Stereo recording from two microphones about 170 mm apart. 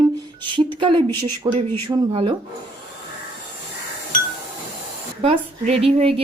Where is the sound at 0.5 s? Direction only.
30° right (ahead or behind).